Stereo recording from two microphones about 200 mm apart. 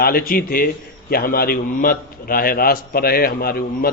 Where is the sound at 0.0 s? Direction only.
50° left (ahead or behind).